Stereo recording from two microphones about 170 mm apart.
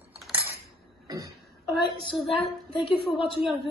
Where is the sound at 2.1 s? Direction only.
Centre (ahead or behind).